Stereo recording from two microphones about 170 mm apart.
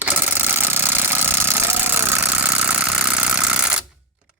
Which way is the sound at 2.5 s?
10° right (ahead or behind).